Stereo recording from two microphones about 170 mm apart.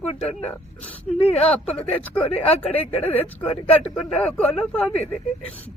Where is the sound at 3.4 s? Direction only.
35° left (ahead or behind).